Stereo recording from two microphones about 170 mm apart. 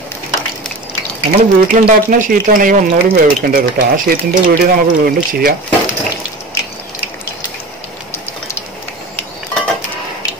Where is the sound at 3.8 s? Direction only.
65° right (ahead or behind).